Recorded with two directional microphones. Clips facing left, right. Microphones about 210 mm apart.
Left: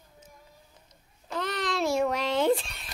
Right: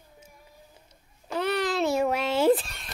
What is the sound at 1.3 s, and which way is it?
A child's voice, 10° right (ahead or behind).